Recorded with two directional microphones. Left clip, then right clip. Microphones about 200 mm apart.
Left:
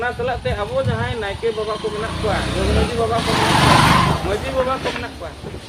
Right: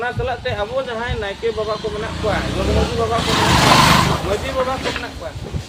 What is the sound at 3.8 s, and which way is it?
Vehicle, 50° right (ahead or behind).